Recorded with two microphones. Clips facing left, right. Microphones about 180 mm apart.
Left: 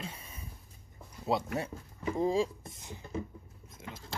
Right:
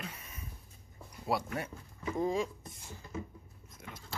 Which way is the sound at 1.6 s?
25° left (ahead or behind).